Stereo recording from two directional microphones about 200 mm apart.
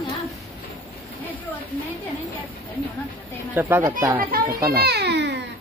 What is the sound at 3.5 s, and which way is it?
Speech, 10° right (ahead or behind).